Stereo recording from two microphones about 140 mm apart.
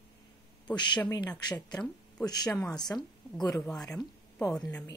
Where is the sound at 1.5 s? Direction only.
10° left (ahead or behind).